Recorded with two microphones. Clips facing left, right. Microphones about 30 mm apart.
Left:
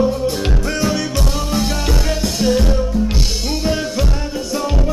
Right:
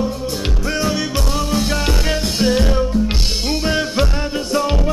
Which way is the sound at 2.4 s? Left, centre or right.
Right.